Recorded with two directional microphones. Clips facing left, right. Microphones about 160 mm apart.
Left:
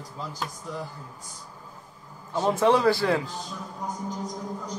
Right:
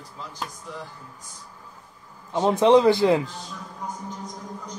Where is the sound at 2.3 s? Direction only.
20° right (ahead or behind).